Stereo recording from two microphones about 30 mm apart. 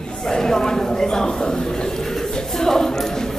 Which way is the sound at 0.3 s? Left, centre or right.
Centre.